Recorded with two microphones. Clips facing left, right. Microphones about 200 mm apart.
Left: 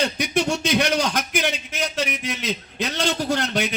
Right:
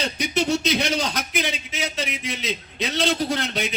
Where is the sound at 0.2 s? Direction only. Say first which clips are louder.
Even; 55° left (ahead or behind).